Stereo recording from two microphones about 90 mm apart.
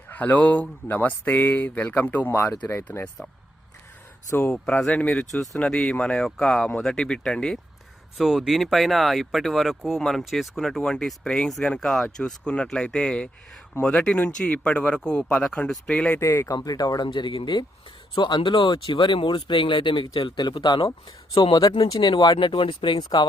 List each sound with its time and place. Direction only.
0.1 s speech: 20° left (ahead or behind)
4.3 s speech: 25° left (ahead or behind)
4.5 s speech: 10° left (ahead or behind)
8.2 s speech: 5° right (ahead or behind)
16.2 s speech: 35° left (ahead or behind)
16.6 s speech: 45° left (ahead or behind)
21.5 s speech: 50° left (ahead or behind)
22.0 s speech: 60° left (ahead or behind)